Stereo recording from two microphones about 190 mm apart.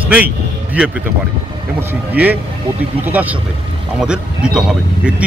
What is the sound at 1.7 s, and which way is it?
Speech, 10° right (ahead or behind).